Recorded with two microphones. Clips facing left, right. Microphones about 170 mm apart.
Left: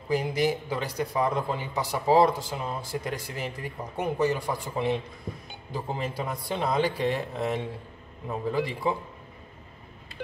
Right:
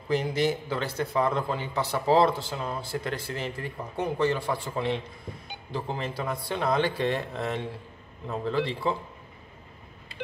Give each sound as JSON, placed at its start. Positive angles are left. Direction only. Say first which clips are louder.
{"t": 0.1, "sound": "a man's voice", "louder": "even", "side_deg": 10}